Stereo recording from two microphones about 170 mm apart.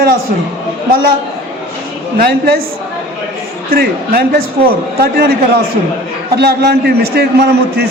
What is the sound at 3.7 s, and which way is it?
A man's voice, 65° right (ahead or behind).